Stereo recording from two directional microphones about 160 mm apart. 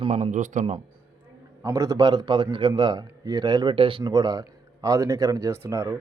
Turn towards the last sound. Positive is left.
turn(degrees=-20)  # may be behind; listen again after turning